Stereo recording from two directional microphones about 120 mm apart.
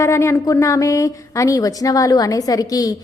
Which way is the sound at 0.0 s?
25° left (ahead or behind).